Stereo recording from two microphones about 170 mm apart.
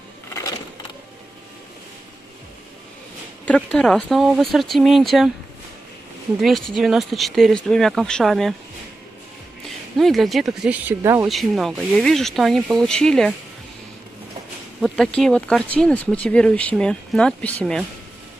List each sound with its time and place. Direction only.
0.3 s a sound: 20° left (ahead or behind)
3.4 s speech: 5° left (ahead or behind)
6.4 s speech: centre (ahead or behind)
9.9 s speech: centre (ahead or behind); by 11.2 s 15° right (ahead or behind)
11.2 s speech: centre (ahead or behind)
15.1 s speech: 5° left (ahead or behind)